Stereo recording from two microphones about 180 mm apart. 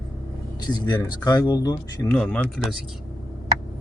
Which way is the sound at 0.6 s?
20° left (ahead or behind).